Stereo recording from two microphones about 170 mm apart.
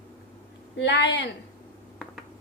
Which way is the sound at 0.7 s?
90° left.